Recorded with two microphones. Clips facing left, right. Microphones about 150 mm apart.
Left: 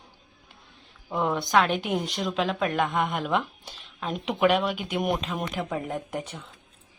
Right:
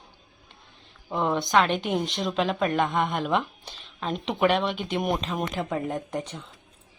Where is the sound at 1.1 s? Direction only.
5° left (ahead or behind).